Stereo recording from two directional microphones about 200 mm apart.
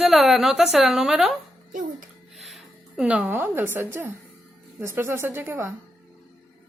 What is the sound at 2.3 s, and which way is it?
A woman's voice, centre (ahead or behind).